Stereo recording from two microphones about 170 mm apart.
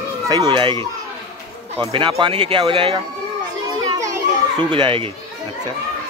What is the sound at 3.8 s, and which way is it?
Children playing, 20° right (ahead or behind).